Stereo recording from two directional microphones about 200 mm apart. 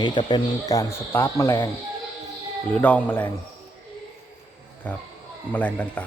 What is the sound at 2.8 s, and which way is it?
Speech, 5° left (ahead or behind).